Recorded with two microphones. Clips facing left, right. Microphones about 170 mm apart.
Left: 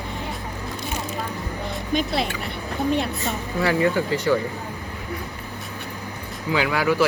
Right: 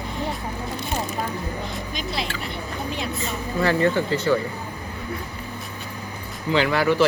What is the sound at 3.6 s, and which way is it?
Speech, 10° left (ahead or behind).